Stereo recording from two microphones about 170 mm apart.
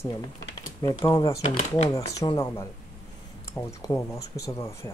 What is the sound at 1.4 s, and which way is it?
Speech, 40° left (ahead or behind).